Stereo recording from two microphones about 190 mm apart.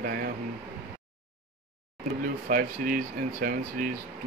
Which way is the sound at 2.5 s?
50° right (ahead or behind).